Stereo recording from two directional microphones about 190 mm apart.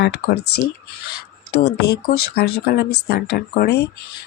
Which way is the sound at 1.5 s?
60° left (ahead or behind).